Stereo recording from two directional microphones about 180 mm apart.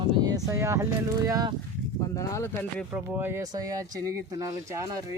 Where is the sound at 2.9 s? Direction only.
10° right (ahead or behind).